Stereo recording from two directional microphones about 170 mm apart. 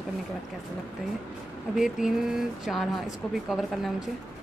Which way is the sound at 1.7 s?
5° right (ahead or behind).